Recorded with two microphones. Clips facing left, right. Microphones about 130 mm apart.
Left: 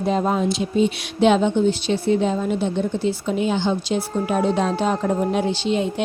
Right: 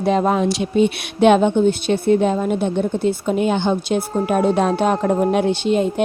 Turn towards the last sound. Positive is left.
turn(degrees=-50)  # may be behind; listen again after turning